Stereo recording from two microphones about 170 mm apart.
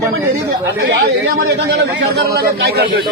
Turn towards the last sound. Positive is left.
turn(degrees=-70)  # may be behind; listen again after turning